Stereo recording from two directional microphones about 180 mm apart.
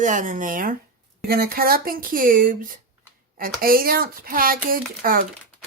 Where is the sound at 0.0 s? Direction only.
45° right (ahead or behind).